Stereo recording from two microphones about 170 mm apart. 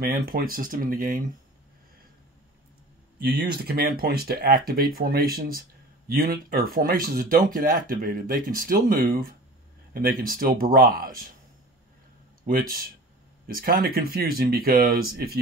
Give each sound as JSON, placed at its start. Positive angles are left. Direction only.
{"t": 0.0, "sound": "speech", "side_deg": -60}
{"t": 3.2, "sound": "speech", "side_deg": -65}
{"t": 12.4, "sound": "speech", "side_deg": -55}